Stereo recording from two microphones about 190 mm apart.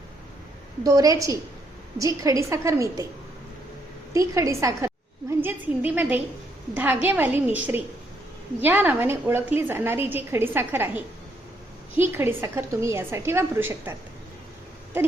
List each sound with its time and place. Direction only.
0.9 s a woman's voice: 20° right (ahead or behind)
4.1 s a woman's voice: 15° right (ahead or behind)